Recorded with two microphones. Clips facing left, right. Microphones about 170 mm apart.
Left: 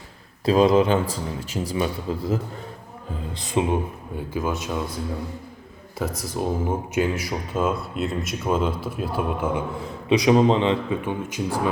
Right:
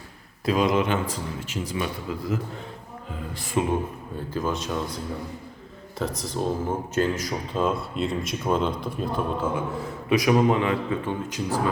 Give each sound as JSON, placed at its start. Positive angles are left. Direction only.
{"t": 0.4, "sound": "a man's voice", "side_deg": 30}
{"t": 3.3, "sound": "a man's voice", "side_deg": 20}
{"t": 4.3, "sound": "speech", "side_deg": 10}
{"t": 6.0, "sound": "a man's voice", "side_deg": 10}